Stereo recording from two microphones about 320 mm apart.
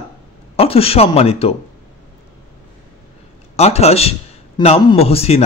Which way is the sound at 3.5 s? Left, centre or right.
Centre.